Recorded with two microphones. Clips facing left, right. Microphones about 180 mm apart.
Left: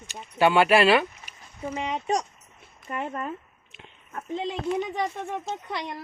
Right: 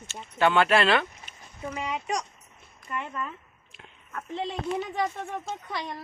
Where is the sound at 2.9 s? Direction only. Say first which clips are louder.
Left 3 dB; 45° left (ahead or behind).